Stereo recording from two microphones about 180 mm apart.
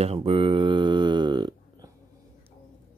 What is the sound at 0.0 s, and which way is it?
Mantra, 35° right (ahead or behind).